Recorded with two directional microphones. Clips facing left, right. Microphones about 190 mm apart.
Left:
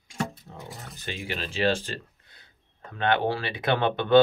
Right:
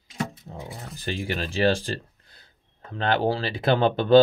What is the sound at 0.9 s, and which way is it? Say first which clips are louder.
Speech: right 5 dB; 40° right (ahead or behind).